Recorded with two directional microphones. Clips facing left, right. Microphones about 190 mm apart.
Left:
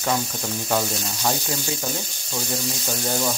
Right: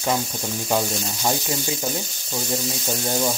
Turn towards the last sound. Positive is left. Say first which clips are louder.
# right 1 dB
turn(degrees=-5)  # may be behind; listen again after turning